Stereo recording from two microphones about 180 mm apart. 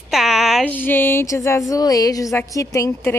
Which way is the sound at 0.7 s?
10° left (ahead or behind).